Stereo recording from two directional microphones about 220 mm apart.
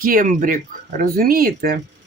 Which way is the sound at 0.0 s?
40° right (ahead or behind).